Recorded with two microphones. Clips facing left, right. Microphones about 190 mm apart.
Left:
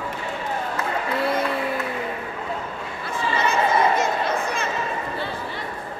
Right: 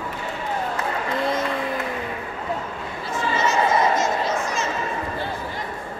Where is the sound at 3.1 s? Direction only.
60° left (ahead or behind).